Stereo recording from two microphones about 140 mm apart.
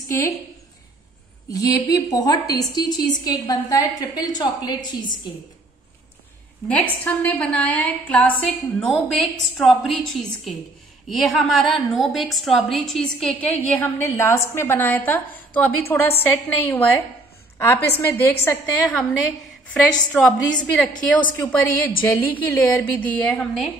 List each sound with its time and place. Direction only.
0.1 s a woman's voice: 20° left (ahead or behind)
1.5 s a woman's voice: 25° left (ahead or behind)
6.7 s a woman's voice: 10° left (ahead or behind)
11.1 s a woman's voice: centre (ahead or behind); by 18.9 s 15° left (ahead or behind)
20.1 s a woman's voice: 5° left (ahead or behind)